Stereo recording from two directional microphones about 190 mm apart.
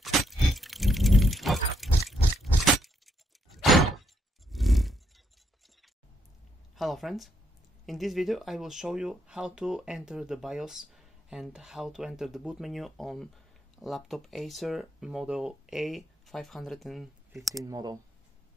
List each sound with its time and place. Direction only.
0.0 s a sound: centre (ahead or behind)
6.8 s speech: centre (ahead or behind)
17.6 s speech: 20° right (ahead or behind)